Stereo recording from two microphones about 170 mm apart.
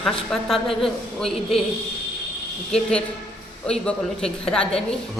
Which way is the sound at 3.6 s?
5° left (ahead or behind).